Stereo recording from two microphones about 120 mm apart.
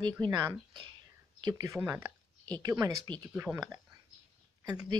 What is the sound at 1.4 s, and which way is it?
Speech, 30° right (ahead or behind).